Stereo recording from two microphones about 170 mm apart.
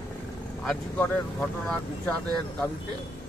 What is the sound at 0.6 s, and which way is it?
Speech, 10° left (ahead or behind).